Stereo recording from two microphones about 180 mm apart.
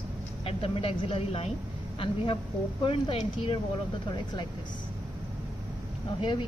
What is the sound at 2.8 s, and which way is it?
Speech, 30° left (ahead or behind).